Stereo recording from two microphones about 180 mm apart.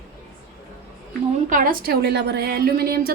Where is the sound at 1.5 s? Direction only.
50° right (ahead or behind).